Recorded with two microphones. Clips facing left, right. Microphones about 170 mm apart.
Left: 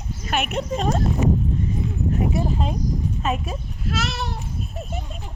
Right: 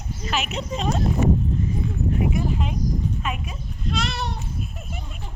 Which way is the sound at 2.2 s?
35° left (ahead or behind).